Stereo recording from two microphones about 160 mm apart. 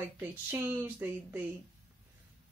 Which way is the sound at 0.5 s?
15° right (ahead or behind).